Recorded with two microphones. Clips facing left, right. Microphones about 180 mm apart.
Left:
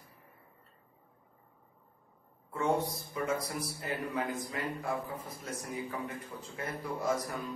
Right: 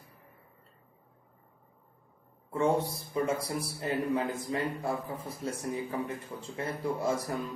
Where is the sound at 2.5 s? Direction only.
30° right (ahead or behind).